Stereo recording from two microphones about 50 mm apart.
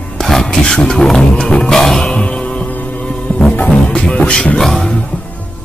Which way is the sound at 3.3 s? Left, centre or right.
Left.